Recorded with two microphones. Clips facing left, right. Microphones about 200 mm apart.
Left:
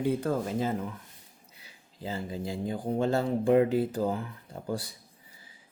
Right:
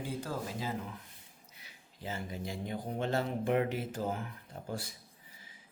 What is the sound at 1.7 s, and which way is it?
Speech, 30° left (ahead or behind).